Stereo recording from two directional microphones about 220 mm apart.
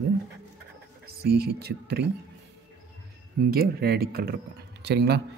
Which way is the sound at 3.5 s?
45° right (ahead or behind).